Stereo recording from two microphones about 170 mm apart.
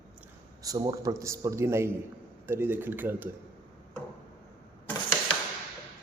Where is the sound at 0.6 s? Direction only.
20° right (ahead or behind).